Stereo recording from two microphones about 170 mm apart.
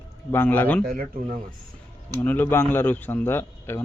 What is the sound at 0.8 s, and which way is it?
Speech, 60° right (ahead or behind).